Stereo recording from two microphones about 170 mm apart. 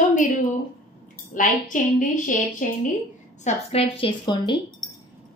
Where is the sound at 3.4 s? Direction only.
35° left (ahead or behind).